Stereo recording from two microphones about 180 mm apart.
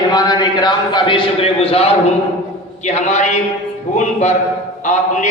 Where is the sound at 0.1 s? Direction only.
25° left (ahead or behind).